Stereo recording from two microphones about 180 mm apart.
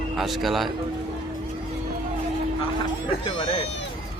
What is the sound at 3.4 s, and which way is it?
Speech, 30° left (ahead or behind).